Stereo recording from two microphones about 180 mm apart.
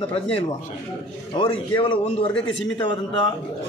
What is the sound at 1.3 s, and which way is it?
Speech, 25° left (ahead or behind).